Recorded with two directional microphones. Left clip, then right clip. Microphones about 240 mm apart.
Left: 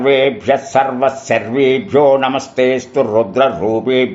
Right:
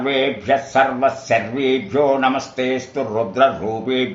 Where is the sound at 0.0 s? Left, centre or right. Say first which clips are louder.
Left 7 dB; left.